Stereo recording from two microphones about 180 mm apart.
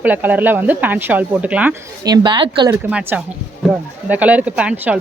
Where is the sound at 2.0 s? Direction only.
25° right (ahead or behind).